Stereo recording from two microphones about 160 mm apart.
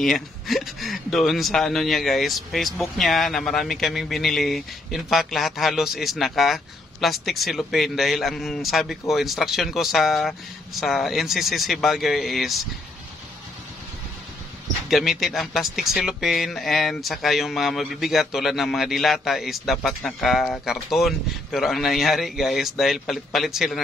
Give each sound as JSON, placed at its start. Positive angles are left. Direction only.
{"t": 0.0, "sound": "speech", "side_deg": 0}
{"t": 14.9, "sound": "speech", "side_deg": 0}